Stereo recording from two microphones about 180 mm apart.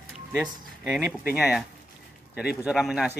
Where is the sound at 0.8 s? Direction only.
5° right (ahead or behind).